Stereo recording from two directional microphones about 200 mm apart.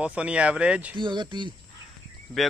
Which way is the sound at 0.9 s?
25° right (ahead or behind).